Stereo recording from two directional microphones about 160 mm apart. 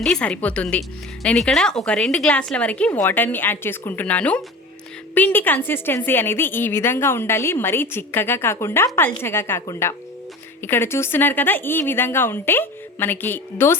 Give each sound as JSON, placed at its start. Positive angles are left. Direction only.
{"t": 0.0, "sound": "a woman's voice", "side_deg": 5}